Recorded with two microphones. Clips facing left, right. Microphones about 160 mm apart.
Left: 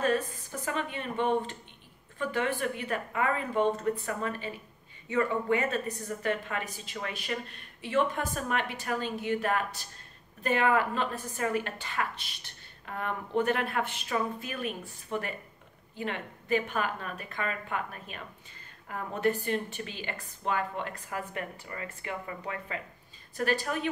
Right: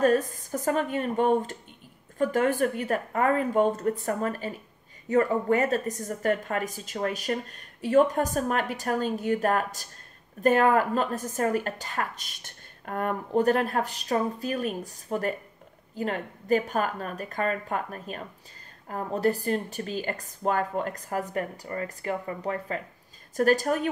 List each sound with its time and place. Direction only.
0.0 s a woman's voice: 40° right (ahead or behind)